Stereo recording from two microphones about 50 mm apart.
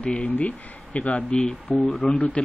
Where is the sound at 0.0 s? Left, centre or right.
Left.